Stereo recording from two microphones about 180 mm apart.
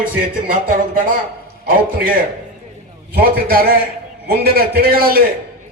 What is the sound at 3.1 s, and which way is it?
A man's voice, 55° right (ahead or behind).